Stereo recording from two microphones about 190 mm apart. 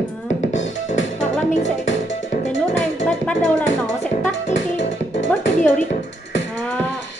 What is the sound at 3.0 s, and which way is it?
Music, 5° left (ahead or behind).